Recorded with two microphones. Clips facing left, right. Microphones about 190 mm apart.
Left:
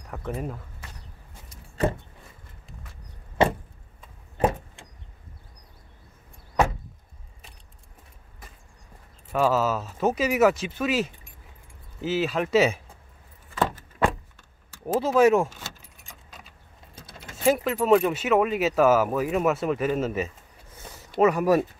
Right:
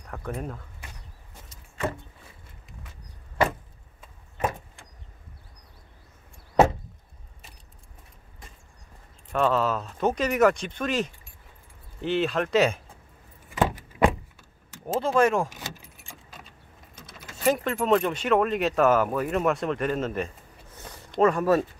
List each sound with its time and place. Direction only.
0.1 s speech: 5° left (ahead or behind)
3.4 s vehicle: 25° left (ahead or behind)
9.3 s speech: 5° left (ahead or behind)
13.5 s vehicle: 15° right (ahead or behind)
15.0 s speech: 5° left (ahead or behind)
15.5 s keys jangling: 10° right (ahead or behind)
16.0 s keys jangling: centre (ahead or behind)
16.9 s keys jangling: 30° left (ahead or behind)
17.5 s speech: 5° left (ahead or behind)
20.8 s a sound: 5° left (ahead or behind)